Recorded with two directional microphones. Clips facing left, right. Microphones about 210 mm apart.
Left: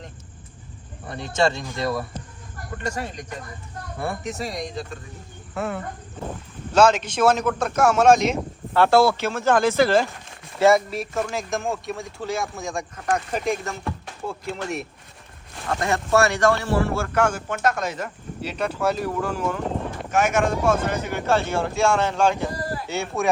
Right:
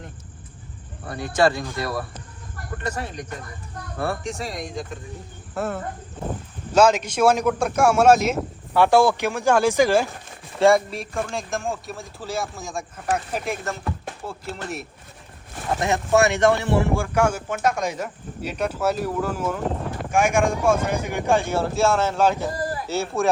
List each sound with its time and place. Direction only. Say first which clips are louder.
1.2 s speech: right 2 dB; 25° left (ahead or behind)
4.2 s speech: left 1 dB; 5° left (ahead or behind)
10.6 s speech: even; centre (ahead or behind)
15.8 s speech: right 1 dB; 20° right (ahead or behind); by 23.3 s centre (ahead or behind)